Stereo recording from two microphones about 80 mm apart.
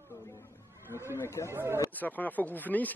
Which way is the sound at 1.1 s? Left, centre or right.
Left.